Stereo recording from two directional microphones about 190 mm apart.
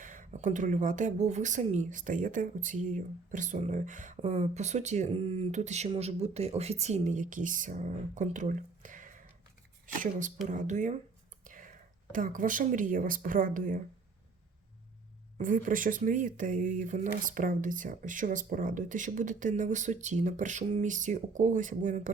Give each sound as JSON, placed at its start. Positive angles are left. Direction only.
{"t": 0.0, "sound": "speech", "side_deg": -45}
{"t": 11.4, "sound": "whispering", "side_deg": -45}
{"t": 12.1, "sound": "speech", "side_deg": -45}
{"t": 15.4, "sound": "speech", "side_deg": -45}